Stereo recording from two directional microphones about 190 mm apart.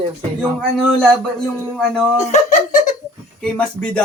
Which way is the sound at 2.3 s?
40° left (ahead or behind).